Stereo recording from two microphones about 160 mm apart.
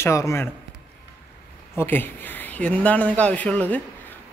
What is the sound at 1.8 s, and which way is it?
A man's voice, 10° left (ahead or behind).